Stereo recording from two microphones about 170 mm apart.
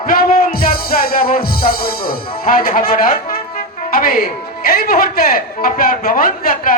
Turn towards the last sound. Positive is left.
turn(degrees=55)  # may be behind; listen again after turning